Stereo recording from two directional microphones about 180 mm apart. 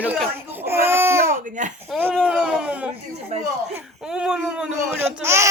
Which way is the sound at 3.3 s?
40° right (ahead or behind).